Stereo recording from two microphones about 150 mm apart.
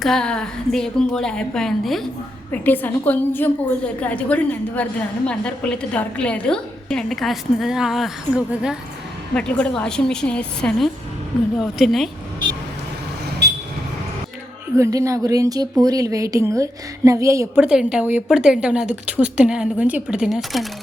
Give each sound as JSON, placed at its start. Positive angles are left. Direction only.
{"t": 0.0, "sound": "a woman's voice", "side_deg": 5}
{"t": 2.5, "sound": "a woman's voice", "side_deg": 10}
{"t": 13.4, "sound": "a sound", "side_deg": -90}
{"t": 14.8, "sound": "a woman's voice", "side_deg": -20}
{"t": 17.6, "sound": "a woman's voice", "side_deg": -5}